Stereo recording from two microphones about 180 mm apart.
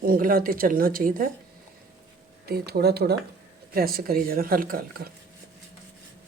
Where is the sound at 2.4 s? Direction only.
60° right (ahead or behind).